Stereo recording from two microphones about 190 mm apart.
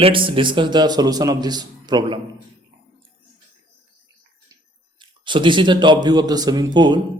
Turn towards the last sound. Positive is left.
turn(degrees=-25)  # may be behind; listen again after turning